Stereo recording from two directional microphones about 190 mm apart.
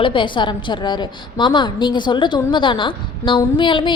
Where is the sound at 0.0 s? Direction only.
25° left (ahead or behind).